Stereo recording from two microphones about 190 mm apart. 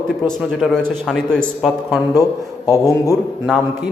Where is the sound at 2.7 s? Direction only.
15° left (ahead or behind).